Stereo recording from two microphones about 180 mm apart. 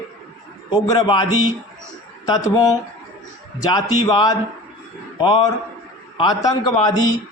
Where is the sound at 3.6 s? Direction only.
20° left (ahead or behind).